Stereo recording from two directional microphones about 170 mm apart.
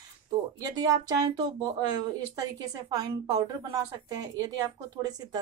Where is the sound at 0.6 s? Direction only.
20° right (ahead or behind).